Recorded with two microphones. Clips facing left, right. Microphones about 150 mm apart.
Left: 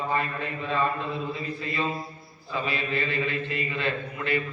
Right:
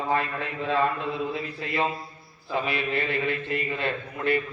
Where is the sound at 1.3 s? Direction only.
80° right.